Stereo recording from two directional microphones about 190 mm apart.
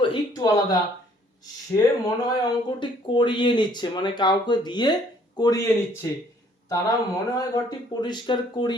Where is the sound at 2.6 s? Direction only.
25° left (ahead or behind).